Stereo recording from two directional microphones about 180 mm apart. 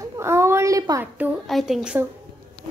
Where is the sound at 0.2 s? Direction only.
15° right (ahead or behind).